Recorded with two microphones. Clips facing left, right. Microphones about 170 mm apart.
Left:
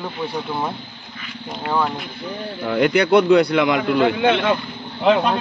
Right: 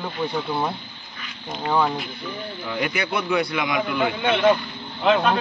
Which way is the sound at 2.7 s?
65° left (ahead or behind).